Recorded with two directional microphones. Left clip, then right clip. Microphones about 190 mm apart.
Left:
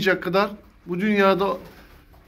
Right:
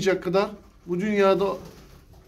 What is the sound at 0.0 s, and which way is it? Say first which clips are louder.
Speech: left 2 dB; centre (ahead or behind).